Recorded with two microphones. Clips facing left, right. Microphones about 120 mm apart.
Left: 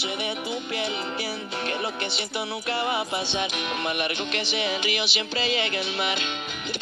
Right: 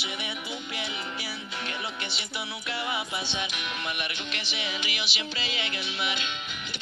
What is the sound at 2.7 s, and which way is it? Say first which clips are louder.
Music: left 5 dB; 35° left (ahead or behind).